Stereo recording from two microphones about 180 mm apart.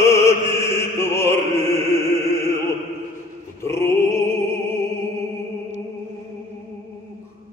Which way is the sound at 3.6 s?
15° left (ahead or behind).